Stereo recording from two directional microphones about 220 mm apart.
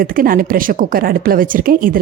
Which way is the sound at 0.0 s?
40° right (ahead or behind).